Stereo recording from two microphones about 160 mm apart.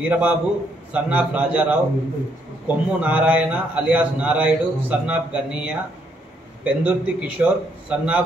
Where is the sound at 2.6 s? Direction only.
10° right (ahead or behind).